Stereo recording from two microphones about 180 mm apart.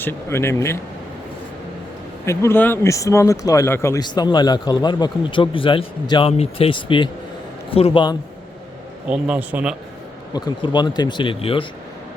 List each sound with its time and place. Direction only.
0.0 s speech: 15° left (ahead or behind)
2.2 s speech: 15° left (ahead or behind); by 8.1 s 30° left (ahead or behind)
9.0 s a man's voice: 5° right (ahead or behind)
10.3 s speech: 25° left (ahead or behind)